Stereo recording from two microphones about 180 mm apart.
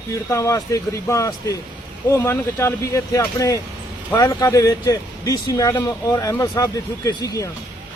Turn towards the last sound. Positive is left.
turn(degrees=20)  # may be behind; listen again after turning